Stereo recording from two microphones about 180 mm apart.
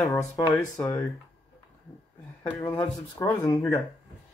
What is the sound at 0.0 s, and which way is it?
Speech, 20° left (ahead or behind).